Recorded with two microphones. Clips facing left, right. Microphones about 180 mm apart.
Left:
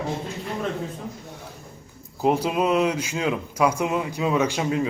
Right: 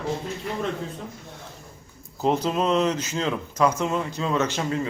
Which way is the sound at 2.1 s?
10° left (ahead or behind).